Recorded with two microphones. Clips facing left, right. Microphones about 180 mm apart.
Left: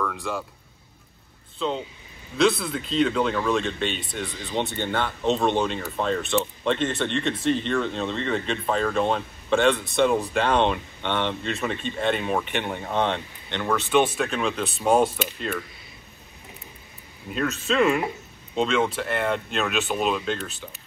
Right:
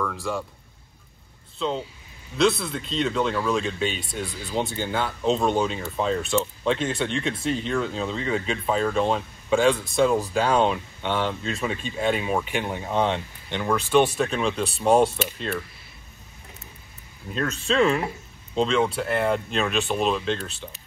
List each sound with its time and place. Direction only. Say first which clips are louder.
0.0 s speech: right 1 dB; centre (ahead or behind)
1.6 s speech: even; centre (ahead or behind)
17.3 s speech: even; 5° left (ahead or behind)